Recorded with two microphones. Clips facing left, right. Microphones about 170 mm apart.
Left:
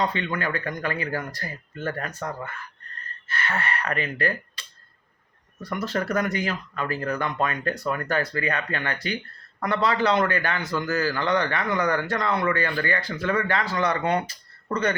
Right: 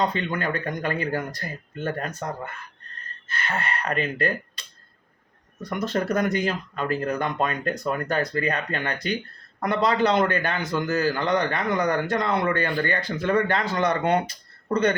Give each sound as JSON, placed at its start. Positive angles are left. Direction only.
{"t": 0.3, "sound": "a man's voice", "side_deg": -20}
{"t": 3.4, "sound": "a man's voice", "side_deg": -20}
{"t": 5.6, "sound": "a man's voice", "side_deg": -20}